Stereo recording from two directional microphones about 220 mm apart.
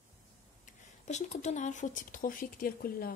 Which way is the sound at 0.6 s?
30° left (ahead or behind).